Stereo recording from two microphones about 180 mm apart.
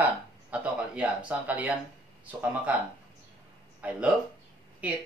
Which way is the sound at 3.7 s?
10° right (ahead or behind).